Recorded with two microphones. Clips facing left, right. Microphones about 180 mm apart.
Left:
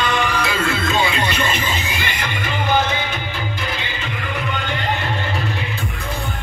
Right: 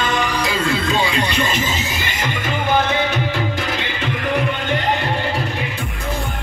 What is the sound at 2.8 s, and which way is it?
Music, 75° right (ahead or behind).